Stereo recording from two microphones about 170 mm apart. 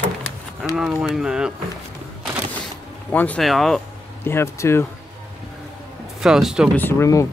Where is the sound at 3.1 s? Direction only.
10° left (ahead or behind).